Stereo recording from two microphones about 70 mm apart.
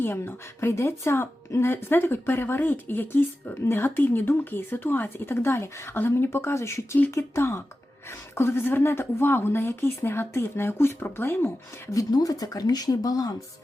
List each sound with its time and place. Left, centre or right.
0.0 s speech: left
12.1 s speech: left